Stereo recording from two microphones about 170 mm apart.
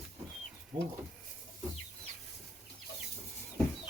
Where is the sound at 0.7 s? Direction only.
30° right (ahead or behind).